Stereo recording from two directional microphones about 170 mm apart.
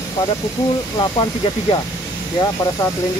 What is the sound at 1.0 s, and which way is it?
Speech, 30° left (ahead or behind).